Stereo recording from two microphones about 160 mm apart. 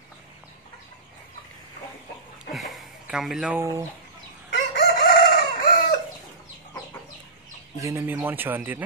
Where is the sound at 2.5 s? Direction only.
Centre (ahead or behind).